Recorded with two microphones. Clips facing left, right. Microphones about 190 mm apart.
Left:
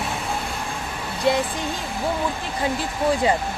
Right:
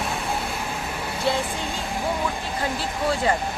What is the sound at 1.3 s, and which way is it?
Speech, 15° left (ahead or behind).